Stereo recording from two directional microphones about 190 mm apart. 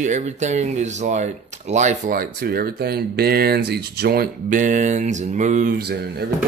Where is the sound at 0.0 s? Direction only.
40° right (ahead or behind).